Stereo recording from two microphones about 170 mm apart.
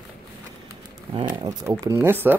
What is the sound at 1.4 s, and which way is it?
Speech, 20° right (ahead or behind).